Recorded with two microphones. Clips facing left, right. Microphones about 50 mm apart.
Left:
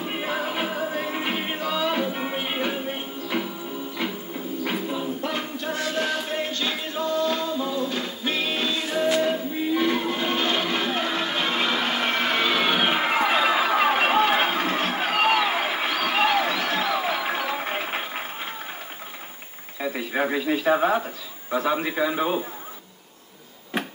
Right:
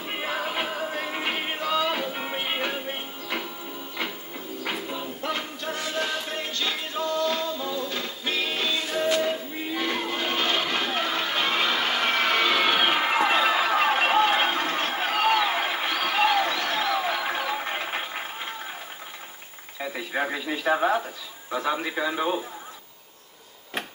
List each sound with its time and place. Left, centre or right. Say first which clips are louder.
0.0 s music: left 2 dB; centre
4.6 s music: left 3 dB; centre
6.3 s music: left 3 dB; centre
10.7 s a sound: left 1 dB; centre
19.8 s a man's voice: left 3 dB; centre